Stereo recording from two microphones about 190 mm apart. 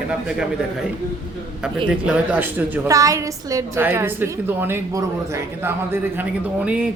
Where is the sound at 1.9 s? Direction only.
5° right (ahead or behind).